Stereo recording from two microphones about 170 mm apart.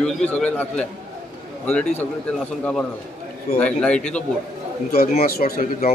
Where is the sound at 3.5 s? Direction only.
5° left (ahead or behind).